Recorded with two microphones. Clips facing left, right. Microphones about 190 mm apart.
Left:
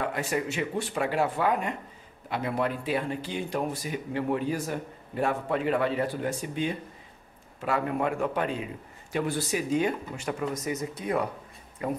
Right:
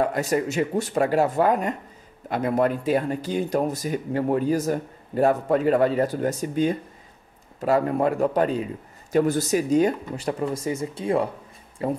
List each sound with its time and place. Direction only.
0.0 s speech: 40° right (ahead or behind)